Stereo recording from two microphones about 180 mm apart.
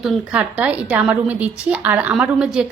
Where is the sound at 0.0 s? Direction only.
5° right (ahead or behind).